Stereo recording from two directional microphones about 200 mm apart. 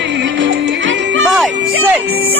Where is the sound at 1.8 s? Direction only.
10° right (ahead or behind).